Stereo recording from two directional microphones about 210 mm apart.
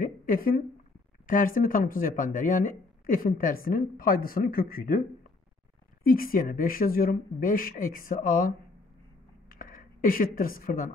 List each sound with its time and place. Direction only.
0.0 s a sound: 40° left (ahead or behind)
1.2 s speech: 40° left (ahead or behind)
6.0 s speech: 45° left (ahead or behind)
9.5 s speech: 40° left (ahead or behind)